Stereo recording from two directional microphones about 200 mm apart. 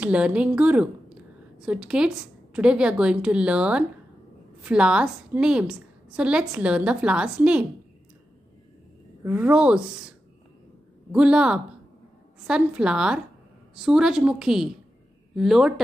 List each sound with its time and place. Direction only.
0.0 s a woman's voice: 5° right (ahead or behind)
9.2 s a woman's voice: 10° right (ahead or behind)